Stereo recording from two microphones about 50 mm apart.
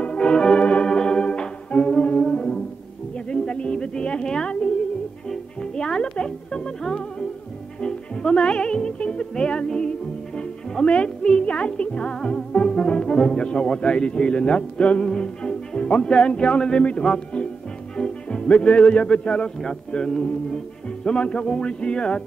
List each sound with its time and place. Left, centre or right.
0.0 s organ: centre
2.0 s music: left
15.0 s speech: centre